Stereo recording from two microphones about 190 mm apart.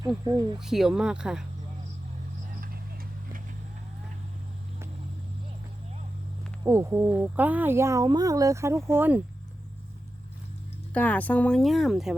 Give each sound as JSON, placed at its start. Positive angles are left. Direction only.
{"t": 0.3, "sound": "speech", "side_deg": -20}
{"t": 0.6, "sound": "speech", "side_deg": 0}
{"t": 2.6, "sound": "vehicle", "side_deg": -50}
{"t": 6.7, "sound": "speech", "side_deg": -10}
{"t": 10.9, "sound": "speech", "side_deg": 10}